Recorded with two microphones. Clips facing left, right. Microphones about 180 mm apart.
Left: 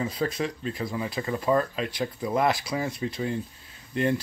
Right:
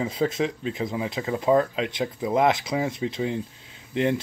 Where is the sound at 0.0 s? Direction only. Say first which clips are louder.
Right 3 dB; 25° right (ahead or behind).